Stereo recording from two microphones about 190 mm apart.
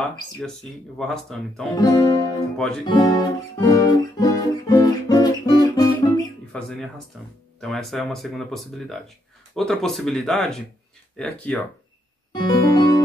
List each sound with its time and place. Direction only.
0.4 s speech: centre (ahead or behind)
1.8 s speech: 20° left (ahead or behind)
2.5 s speech: 5° left (ahead or behind)
2.9 s guitar: 20° left (ahead or behind)
6.5 s speech: 5° left (ahead or behind)
12.3 s music: 20° left (ahead or behind)